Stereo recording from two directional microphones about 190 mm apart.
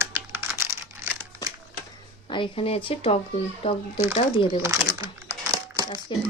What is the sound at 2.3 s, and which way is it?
Speech, 30° left (ahead or behind).